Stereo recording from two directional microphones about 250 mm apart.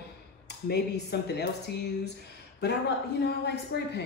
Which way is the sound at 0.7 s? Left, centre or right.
Left.